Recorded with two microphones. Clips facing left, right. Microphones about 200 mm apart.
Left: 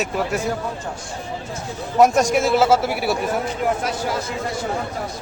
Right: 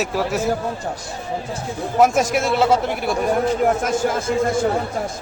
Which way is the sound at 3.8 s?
45° right (ahead or behind).